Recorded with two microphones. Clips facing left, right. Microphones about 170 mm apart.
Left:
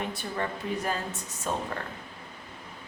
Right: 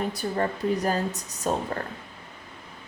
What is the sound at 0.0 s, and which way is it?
Speech, 40° right (ahead or behind).